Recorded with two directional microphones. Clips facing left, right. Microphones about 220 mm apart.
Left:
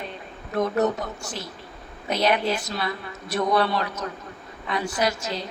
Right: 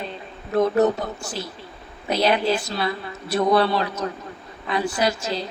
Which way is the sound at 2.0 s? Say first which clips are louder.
Right 3 dB; 30° right (ahead or behind).